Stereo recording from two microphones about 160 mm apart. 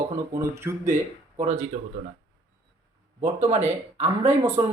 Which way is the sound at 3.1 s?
40° right (ahead or behind).